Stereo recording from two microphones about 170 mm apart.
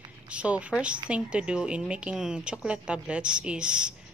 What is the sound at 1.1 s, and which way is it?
Speech, 5° right (ahead or behind).